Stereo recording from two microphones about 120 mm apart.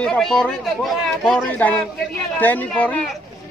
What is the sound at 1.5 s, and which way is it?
Speech, 15° left (ahead or behind).